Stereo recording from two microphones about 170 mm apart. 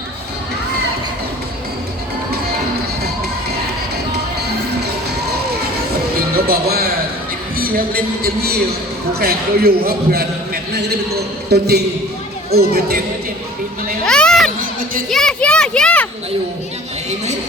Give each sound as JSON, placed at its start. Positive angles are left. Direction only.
{"t": 6.1, "sound": "music", "side_deg": -60}
{"t": 7.5, "sound": "a man's voice", "side_deg": -60}
{"t": 11.1, "sound": "a man's voice", "side_deg": -75}
{"t": 14.0, "sound": "a sound", "side_deg": 5}
{"t": 15.1, "sound": "children playing", "side_deg": 5}